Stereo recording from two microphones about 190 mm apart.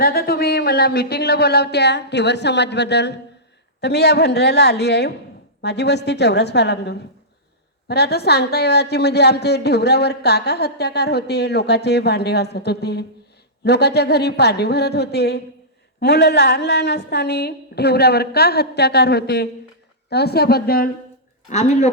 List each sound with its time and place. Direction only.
0.0 s a woman's voice: 55° left (ahead or behind)
21.5 s speech: 35° left (ahead or behind)